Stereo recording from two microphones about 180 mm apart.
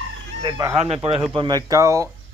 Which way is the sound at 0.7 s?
35° right (ahead or behind).